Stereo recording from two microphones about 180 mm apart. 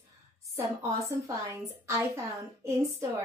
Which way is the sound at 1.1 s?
15° right (ahead or behind).